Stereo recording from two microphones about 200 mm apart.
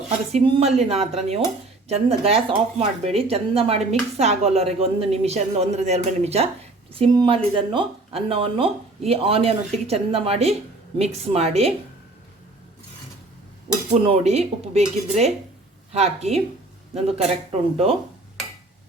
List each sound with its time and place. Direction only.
0.3 s a woman's voice: 30° right (ahead or behind)
13.9 s a woman's voice: 30° right (ahead or behind)